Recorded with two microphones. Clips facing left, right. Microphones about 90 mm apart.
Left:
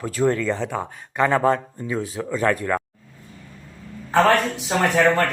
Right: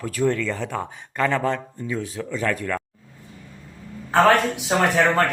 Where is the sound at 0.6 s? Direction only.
15° left (ahead or behind).